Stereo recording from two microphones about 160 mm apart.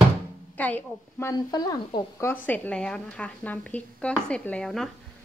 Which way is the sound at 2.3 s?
10° left (ahead or behind).